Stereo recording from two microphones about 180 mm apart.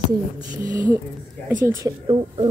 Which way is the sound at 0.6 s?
45° right (ahead or behind).